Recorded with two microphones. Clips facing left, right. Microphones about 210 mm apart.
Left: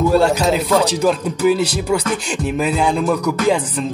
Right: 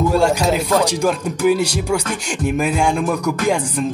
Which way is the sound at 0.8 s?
10° right (ahead or behind).